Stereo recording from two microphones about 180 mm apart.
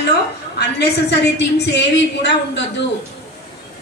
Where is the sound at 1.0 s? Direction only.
75° left (ahead or behind).